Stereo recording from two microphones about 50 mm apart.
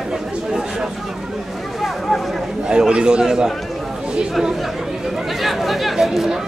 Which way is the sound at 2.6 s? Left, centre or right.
Centre.